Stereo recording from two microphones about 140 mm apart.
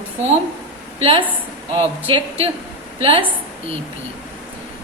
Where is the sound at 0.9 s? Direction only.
40° right (ahead or behind).